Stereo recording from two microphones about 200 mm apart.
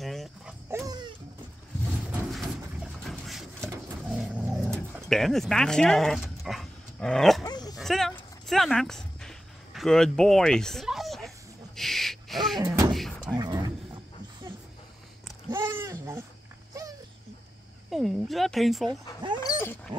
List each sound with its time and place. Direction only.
0.0 s dog: centre (ahead or behind)
0.7 s dog: 15° right (ahead or behind)
2.3 s pigeon: centre (ahead or behind)
5.0 s speech: centre (ahead or behind)
7.4 s dog: 20° left (ahead or behind)
7.7 s a sound: centre (ahead or behind)
12.5 s door: 20° right (ahead or behind)
12.9 s a sound: centre (ahead or behind)
13.2 s a sound: 20° right (ahead or behind)
15.5 s a sound: 15° right (ahead or behind)
17.8 s speech: centre (ahead or behind)
19.4 s dog: 10° left (ahead or behind)